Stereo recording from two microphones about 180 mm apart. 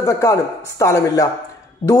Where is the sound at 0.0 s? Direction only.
15° left (ahead or behind).